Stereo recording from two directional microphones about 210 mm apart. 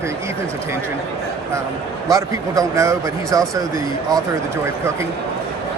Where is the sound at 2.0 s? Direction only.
15° right (ahead or behind).